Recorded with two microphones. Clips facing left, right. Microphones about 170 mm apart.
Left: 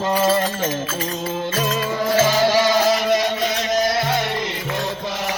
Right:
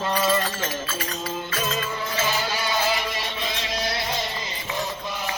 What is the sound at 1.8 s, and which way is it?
Music, 90° left.